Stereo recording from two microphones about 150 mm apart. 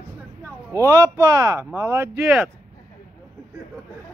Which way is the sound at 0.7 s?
20° right (ahead or behind).